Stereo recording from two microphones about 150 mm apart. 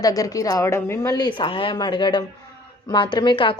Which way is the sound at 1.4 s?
35° left (ahead or behind).